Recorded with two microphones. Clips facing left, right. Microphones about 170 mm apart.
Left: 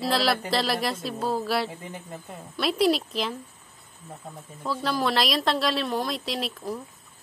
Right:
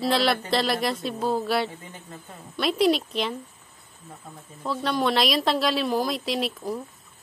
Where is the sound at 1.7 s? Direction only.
20° left (ahead or behind).